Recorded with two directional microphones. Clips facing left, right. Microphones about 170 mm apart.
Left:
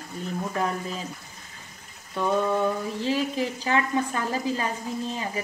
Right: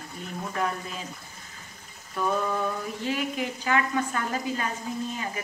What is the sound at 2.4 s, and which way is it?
A woman's voice, 30° left (ahead or behind).